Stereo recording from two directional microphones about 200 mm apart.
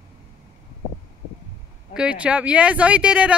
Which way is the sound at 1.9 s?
5° right (ahead or behind).